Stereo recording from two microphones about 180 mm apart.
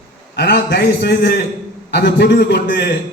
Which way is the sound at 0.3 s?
70° left (ahead or behind).